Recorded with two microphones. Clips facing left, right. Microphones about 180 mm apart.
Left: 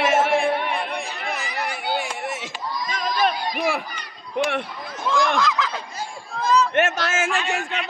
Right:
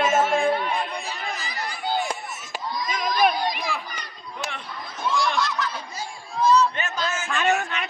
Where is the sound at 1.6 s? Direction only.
70° left (ahead or behind); by 2.5 s 90° left.